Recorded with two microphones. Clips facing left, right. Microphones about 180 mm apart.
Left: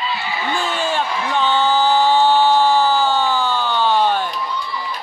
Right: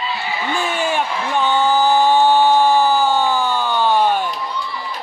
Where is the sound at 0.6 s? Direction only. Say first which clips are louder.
Right 2 dB; 15° right (ahead or behind).